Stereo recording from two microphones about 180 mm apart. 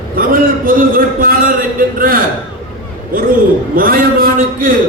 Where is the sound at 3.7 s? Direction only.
50° right (ahead or behind).